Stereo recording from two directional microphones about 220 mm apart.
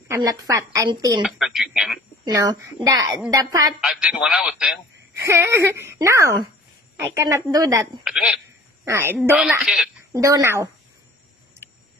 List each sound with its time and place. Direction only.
0.1 s speech: 15° right (ahead or behind)
1.4 s speech: centre (ahead or behind)
2.3 s speech: 15° right (ahead or behind)
3.8 s speech: centre (ahead or behind)
8.0 s speech: centre (ahead or behind)
10.1 s speech: 15° right (ahead or behind)